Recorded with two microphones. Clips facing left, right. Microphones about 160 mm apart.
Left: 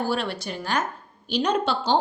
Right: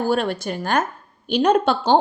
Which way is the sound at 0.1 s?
50° right (ahead or behind).